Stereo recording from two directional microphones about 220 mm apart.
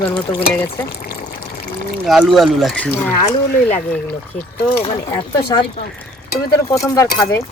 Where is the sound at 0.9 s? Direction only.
45° left (ahead or behind).